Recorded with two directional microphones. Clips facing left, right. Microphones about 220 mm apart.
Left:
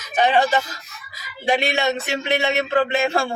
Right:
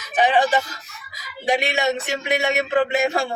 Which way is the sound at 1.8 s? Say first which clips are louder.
Even; 15° right (ahead or behind).